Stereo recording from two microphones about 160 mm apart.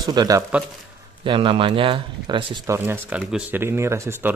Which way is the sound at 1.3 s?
35° right (ahead or behind).